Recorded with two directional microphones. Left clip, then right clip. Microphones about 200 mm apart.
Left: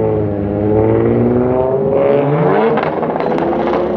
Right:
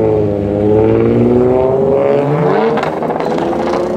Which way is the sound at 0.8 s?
60° right (ahead or behind).